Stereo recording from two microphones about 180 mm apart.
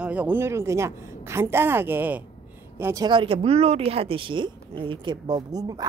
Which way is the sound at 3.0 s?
30° right (ahead or behind).